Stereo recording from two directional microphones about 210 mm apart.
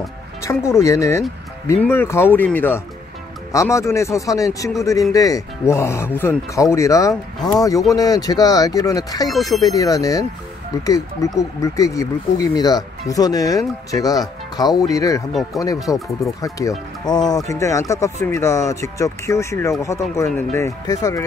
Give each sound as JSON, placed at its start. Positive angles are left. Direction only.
{"t": 0.4, "sound": "speech", "side_deg": 15}
{"t": 9.3, "sound": "speech", "side_deg": 0}
{"t": 9.8, "sound": "speech", "side_deg": 15}